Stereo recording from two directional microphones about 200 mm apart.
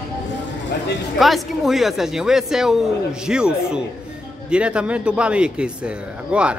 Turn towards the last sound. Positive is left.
turn(degrees=-5)  # may be behind; listen again after turning